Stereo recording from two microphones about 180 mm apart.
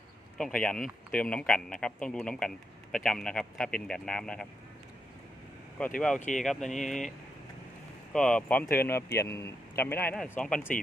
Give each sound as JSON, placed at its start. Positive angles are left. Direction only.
{"t": 0.3, "sound": "speech", "side_deg": 5}
{"t": 5.8, "sound": "speech", "side_deg": 10}
{"t": 6.1, "sound": "speech", "side_deg": 45}
{"t": 6.4, "sound": "speech", "side_deg": 0}
{"t": 8.1, "sound": "speech", "side_deg": 5}